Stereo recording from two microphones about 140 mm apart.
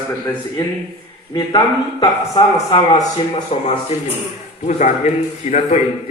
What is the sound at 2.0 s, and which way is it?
Speech, 35° left (ahead or behind).